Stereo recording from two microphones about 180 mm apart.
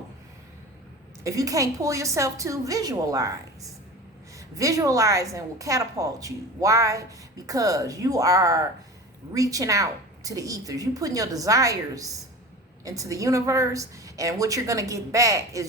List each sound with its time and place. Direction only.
1.2 s a woman's voice: 20° right (ahead or behind)